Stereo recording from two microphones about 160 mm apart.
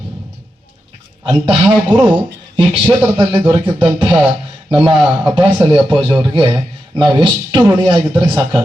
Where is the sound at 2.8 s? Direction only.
10° right (ahead or behind).